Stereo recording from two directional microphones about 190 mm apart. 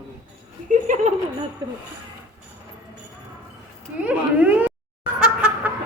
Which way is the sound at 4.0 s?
5° right (ahead or behind).